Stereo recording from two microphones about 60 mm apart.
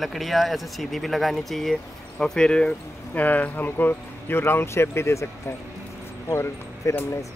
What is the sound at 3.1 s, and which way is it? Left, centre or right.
Speech, left.